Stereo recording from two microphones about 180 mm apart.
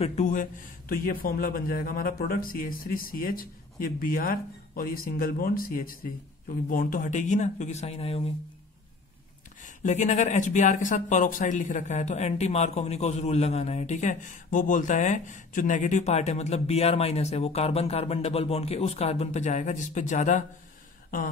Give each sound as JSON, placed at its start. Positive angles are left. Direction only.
{"t": 0.0, "sound": "a man's voice", "side_deg": 40}
{"t": 9.6, "sound": "speech", "side_deg": 45}